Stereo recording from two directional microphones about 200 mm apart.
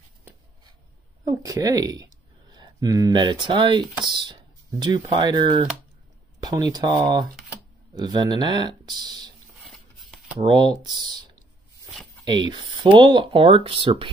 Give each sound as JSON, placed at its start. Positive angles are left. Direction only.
{"t": 1.2, "sound": "a woman's voice", "side_deg": -20}
{"t": 9.6, "sound": "a sound", "side_deg": 0}
{"t": 10.4, "sound": "speech", "side_deg": -20}
{"t": 12.4, "sound": "speech", "side_deg": -20}